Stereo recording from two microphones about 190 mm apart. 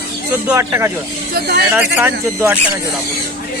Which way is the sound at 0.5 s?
15° right (ahead or behind).